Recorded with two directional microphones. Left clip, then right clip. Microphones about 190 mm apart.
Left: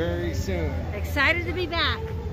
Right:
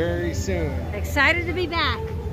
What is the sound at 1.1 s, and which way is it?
Speech, 15° right (ahead or behind).